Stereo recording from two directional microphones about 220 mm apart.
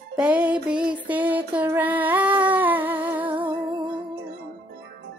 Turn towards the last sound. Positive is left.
turn(degrees=-20)  # may be behind; listen again after turning